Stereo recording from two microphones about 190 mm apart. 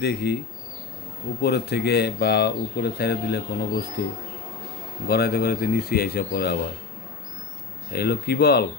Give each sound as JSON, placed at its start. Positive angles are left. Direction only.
{"t": 0.0, "sound": "speech", "side_deg": 60}
{"t": 1.4, "sound": "speech", "side_deg": 60}
{"t": 5.0, "sound": "speech", "side_deg": 55}
{"t": 7.9, "sound": "speech", "side_deg": 55}